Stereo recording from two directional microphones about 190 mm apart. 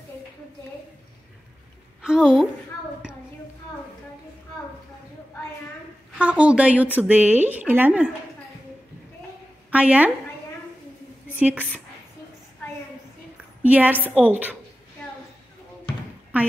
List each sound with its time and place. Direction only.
2.0 s a woman's voice: 5° right (ahead or behind)
6.1 s speech: 5° right (ahead or behind)
9.7 s a woman's voice: 5° right (ahead or behind)
13.7 s speech: 10° right (ahead or behind)